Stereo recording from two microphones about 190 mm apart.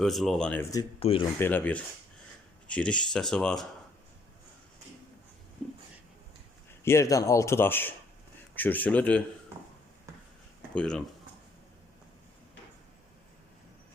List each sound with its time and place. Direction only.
0.0 s speech: centre (ahead or behind)
0.9 s speech: 30° left (ahead or behind)
1.4 s speech: 10° left (ahead or behind)
6.8 s speech: 15° left (ahead or behind)
10.8 s speech: 5° left (ahead or behind)